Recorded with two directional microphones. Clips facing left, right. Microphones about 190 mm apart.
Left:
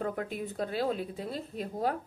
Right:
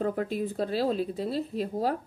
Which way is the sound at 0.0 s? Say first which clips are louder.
Right 5 dB; 35° right (ahead or behind).